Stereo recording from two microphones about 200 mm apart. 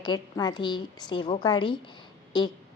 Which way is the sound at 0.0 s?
20° left (ahead or behind).